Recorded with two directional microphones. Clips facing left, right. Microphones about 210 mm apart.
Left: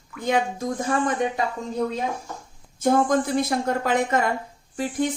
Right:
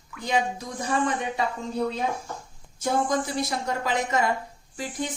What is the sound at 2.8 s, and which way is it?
Speech, 55° left (ahead or behind).